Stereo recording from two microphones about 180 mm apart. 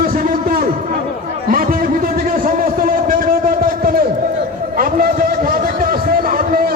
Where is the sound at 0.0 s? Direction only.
50° right (ahead or behind).